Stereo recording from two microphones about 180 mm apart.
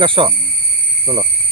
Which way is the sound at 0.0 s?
30° right (ahead or behind).